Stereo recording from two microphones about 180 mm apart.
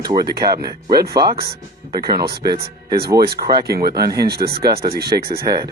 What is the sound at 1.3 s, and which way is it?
Speech, 55° right (ahead or behind).